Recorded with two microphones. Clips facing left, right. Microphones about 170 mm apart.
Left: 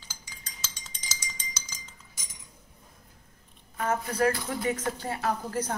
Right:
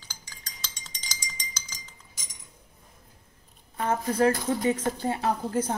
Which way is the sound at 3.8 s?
30° right (ahead or behind).